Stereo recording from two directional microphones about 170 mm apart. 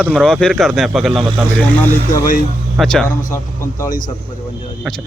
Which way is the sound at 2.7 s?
5° left (ahead or behind).